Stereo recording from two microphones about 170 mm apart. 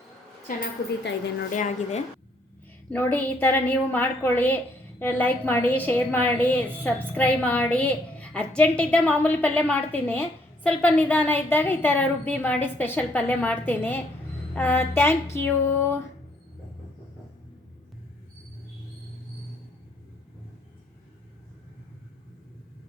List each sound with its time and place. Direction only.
1.5 s a woman's voice: 45° left (ahead or behind)
2.9 s a woman's voice: 10° left (ahead or behind)